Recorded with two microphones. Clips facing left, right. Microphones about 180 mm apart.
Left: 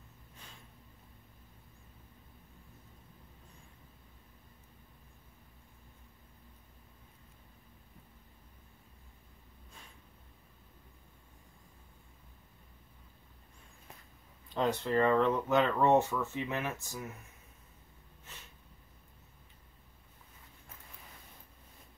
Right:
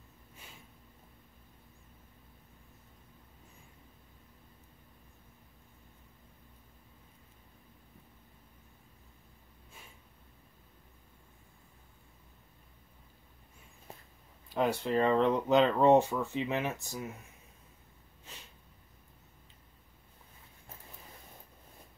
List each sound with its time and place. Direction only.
14.5 s speech: 10° right (ahead or behind)